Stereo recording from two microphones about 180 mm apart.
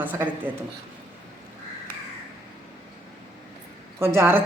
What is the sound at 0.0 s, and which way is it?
Speech, 10° right (ahead or behind).